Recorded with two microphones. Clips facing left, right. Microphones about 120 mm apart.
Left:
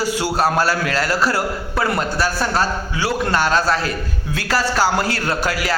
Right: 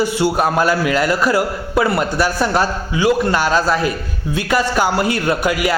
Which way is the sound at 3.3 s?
10° right (ahead or behind).